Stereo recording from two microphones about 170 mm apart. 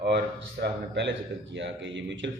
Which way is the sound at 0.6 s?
90° right.